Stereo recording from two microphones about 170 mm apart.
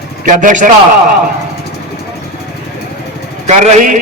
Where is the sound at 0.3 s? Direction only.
50° right (ahead or behind).